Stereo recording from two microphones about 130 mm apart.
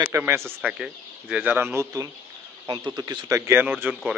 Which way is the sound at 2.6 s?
35° right (ahead or behind).